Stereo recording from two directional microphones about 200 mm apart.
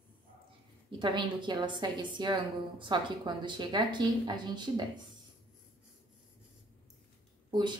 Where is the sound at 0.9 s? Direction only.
25° right (ahead or behind).